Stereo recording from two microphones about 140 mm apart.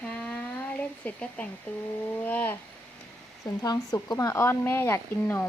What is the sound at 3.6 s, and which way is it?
Speech, 25° left (ahead or behind).